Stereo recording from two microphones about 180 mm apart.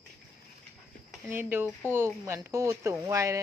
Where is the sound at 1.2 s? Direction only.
10° right (ahead or behind).